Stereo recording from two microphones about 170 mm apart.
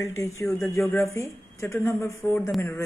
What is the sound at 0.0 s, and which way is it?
A man's voice, 15° left (ahead or behind).